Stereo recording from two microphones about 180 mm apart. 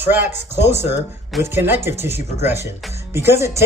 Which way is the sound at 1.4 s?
10° right (ahead or behind).